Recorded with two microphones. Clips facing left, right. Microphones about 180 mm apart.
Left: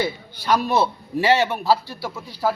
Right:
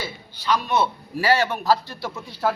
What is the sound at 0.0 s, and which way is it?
Speech, 45° left (ahead or behind).